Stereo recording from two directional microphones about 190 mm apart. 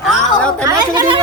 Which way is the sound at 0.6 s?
20° right (ahead or behind).